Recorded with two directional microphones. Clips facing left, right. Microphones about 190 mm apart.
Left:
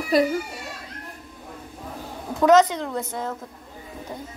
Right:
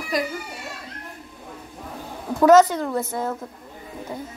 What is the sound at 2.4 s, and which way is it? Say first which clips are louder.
Speech: right 2 dB; 5° right (ahead or behind).